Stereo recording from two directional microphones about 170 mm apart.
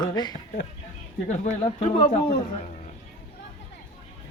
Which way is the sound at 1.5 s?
40° left (ahead or behind).